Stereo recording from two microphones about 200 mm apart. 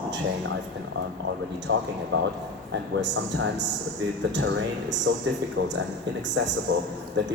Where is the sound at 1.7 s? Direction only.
70° right (ahead or behind).